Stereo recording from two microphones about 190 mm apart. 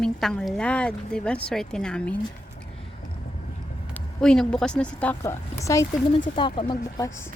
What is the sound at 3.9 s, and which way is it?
Speech, 5° left (ahead or behind).